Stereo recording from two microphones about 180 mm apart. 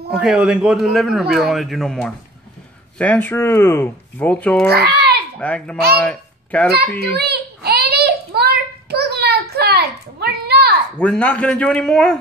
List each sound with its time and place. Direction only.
0.1 s a man's voice: 5° right (ahead or behind)
4.6 s a child's voice: 65° right (ahead or behind)
5.4 s a child's voice: 10° left (ahead or behind)
7.2 s a sound: 60° right (ahead or behind)
11.0 s speech: 10° left (ahead or behind)